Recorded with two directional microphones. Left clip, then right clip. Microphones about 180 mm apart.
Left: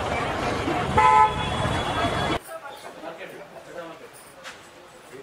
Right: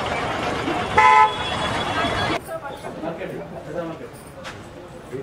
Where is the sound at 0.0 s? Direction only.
5° right (ahead or behind).